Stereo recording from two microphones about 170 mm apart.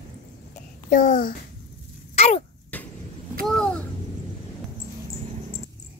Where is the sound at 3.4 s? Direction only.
5° left (ahead or behind).